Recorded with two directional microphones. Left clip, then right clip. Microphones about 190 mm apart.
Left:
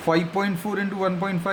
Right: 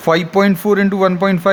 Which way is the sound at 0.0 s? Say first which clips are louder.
Right 9 dB; 50° right (ahead or behind).